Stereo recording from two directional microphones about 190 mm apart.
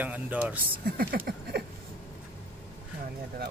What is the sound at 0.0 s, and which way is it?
Speech, 10° right (ahead or behind).